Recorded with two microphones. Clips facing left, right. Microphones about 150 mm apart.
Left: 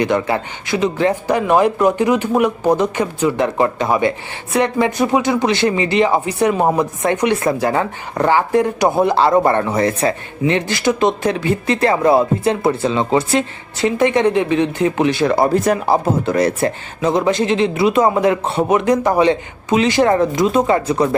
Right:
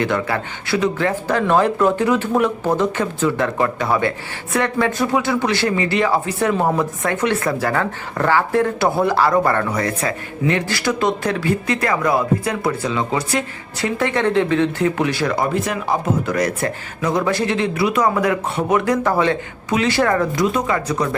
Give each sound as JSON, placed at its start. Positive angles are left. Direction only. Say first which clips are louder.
{"t": 0.0, "sound": "speech", "louder": "left 3 dB", "side_deg": 20}
{"t": 16.2, "sound": "speech", "louder": "left 4 dB", "side_deg": 25}